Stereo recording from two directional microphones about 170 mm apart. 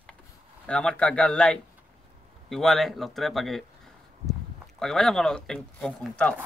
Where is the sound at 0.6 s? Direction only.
5° left (ahead or behind).